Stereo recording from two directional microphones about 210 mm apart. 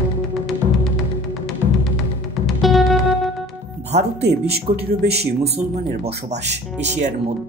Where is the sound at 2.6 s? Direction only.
Centre (ahead or behind).